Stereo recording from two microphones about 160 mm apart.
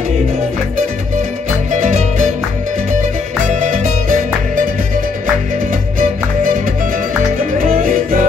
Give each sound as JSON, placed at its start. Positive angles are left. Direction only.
{"t": 1.7, "sound": "music", "side_deg": -50}
{"t": 3.4, "sound": "music", "side_deg": -50}
{"t": 5.7, "sound": "music", "side_deg": -55}
{"t": 7.6, "sound": "music", "side_deg": -60}